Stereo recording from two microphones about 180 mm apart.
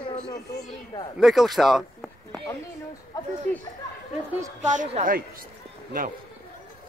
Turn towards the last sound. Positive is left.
turn(degrees=-50)  # may be behind; listen again after turning